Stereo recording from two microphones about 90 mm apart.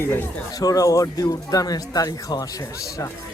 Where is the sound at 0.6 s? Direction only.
40° left (ahead or behind).